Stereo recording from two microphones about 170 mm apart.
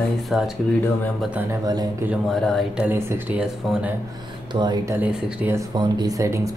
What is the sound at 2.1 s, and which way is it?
Speech, centre (ahead or behind).